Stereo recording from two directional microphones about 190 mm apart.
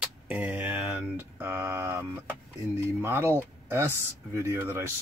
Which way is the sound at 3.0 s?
15° right (ahead or behind).